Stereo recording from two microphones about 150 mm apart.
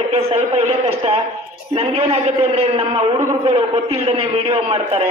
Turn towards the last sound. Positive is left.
turn(degrees=-40)  # may be behind; listen again after turning